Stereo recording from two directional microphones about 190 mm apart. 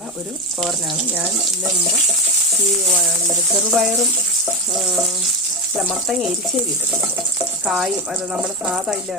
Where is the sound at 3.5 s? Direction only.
Centre (ahead or behind).